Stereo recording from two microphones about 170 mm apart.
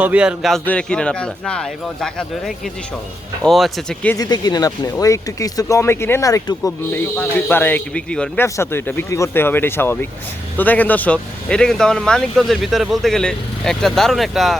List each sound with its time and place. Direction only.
0.0 s speech: 5° right (ahead or behind)
3.4 s speech: centre (ahead or behind)
4.2 s speech: 25° left (ahead or behind)
6.7 s speech: 10° left (ahead or behind)